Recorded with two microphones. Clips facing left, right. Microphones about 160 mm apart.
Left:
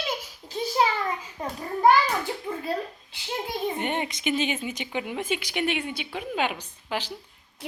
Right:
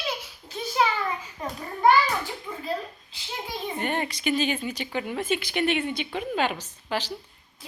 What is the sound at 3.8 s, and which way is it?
A woman's voice, 20° left (ahead or behind).